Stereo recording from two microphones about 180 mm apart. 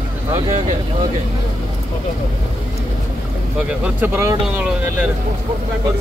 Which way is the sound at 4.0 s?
15° right (ahead or behind).